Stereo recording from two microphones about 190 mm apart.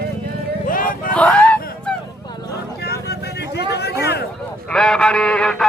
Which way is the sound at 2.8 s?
60° left (ahead or behind).